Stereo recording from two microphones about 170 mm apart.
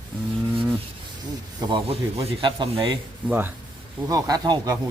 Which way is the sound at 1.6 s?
30° right (ahead or behind).